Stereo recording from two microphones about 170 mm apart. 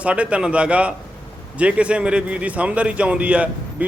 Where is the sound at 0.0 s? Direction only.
5° right (ahead or behind).